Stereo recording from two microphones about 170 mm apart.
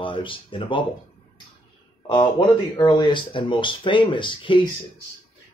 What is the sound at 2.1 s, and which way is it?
Speech, 30° left (ahead or behind).